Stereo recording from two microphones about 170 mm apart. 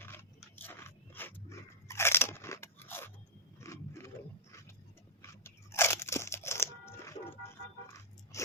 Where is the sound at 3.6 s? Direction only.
15° left (ahead or behind).